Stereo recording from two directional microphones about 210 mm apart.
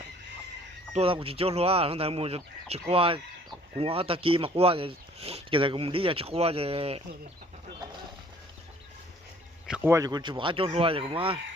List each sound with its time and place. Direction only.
0.9 s speech: 25° right (ahead or behind)
9.6 s speech: 5° right (ahead or behind); by 11.3 s 25° right (ahead or behind)